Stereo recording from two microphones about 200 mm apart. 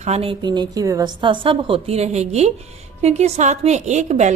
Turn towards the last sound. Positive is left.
turn(degrees=-35)  # may be behind; listen again after turning